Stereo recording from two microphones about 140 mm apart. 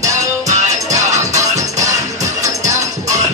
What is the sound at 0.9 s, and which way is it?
Music, 25° right (ahead or behind).